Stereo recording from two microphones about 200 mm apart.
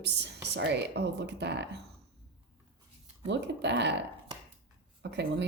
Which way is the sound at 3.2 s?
60° right (ahead or behind).